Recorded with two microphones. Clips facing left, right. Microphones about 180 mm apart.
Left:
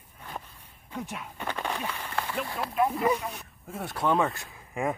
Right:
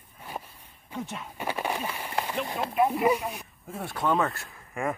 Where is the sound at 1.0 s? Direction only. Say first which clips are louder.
Right 1 dB; 10° left (ahead or behind).